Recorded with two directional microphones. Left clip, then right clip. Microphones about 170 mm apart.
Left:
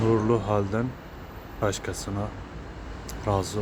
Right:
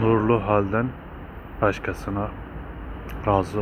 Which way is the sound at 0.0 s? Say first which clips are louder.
Right 3 dB; 20° left (ahead or behind).